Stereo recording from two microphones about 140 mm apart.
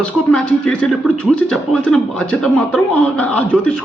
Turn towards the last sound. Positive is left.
turn(degrees=10)  # may be behind; listen again after turning